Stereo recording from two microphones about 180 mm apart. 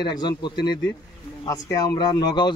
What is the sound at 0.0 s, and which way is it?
Speech, 25° left (ahead or behind).